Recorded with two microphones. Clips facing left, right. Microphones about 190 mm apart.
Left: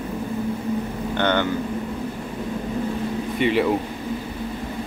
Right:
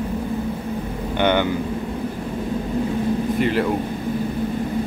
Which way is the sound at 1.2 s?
15° right (ahead or behind).